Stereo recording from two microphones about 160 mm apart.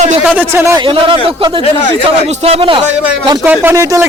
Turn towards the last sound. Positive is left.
turn(degrees=-20)  # may be behind; listen again after turning